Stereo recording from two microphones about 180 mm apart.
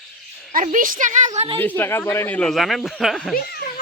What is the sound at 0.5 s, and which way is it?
Speech, 45° right (ahead or behind).